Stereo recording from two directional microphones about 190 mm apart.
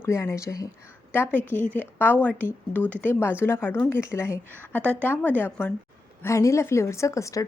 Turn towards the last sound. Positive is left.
turn(degrees=15)  # may be behind; listen again after turning